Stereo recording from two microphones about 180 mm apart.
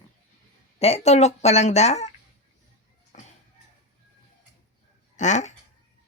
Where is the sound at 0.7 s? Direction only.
35° left (ahead or behind).